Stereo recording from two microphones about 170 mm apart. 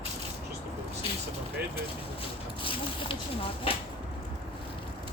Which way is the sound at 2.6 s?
30° left (ahead or behind).